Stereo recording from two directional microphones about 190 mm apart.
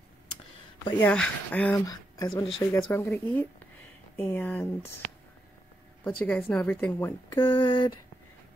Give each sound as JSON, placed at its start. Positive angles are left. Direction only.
{"t": 1.0, "sound": "speech", "side_deg": 5}
{"t": 1.9, "sound": "speech", "side_deg": 20}
{"t": 6.0, "sound": "speech", "side_deg": 5}
{"t": 7.3, "sound": "a sound", "side_deg": 25}